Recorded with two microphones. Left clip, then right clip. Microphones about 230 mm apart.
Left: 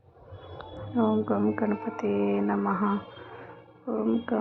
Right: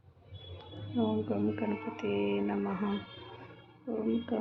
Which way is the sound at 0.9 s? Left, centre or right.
Centre.